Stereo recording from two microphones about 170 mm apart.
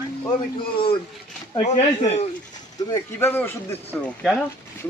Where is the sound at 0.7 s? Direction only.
30° left (ahead or behind).